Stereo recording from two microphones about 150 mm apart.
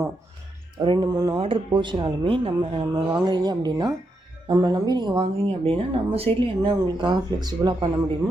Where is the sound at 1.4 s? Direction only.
35° right (ahead or behind).